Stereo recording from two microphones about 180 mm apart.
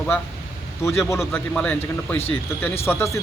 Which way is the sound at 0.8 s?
15° left (ahead or behind).